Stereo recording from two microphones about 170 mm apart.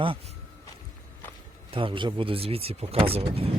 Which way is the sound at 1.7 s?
30° right (ahead or behind).